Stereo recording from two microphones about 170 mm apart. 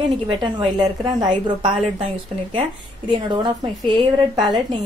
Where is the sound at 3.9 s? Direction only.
25° right (ahead or behind).